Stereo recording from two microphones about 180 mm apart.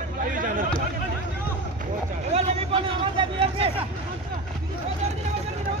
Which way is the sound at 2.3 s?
30° right (ahead or behind).